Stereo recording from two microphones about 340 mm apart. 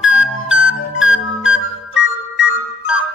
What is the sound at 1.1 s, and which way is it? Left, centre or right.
Music, left.